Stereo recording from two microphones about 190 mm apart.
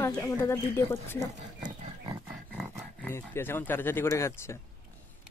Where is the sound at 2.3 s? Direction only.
Centre (ahead or behind).